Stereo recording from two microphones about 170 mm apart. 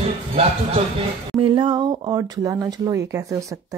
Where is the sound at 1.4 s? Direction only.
30° right (ahead or behind).